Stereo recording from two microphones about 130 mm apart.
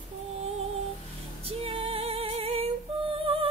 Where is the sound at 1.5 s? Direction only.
45° right (ahead or behind).